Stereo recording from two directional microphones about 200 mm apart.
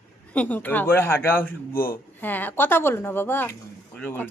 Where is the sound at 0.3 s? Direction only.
10° left (ahead or behind).